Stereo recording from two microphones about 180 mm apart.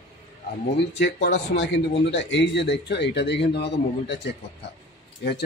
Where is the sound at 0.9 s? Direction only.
75° left (ahead or behind).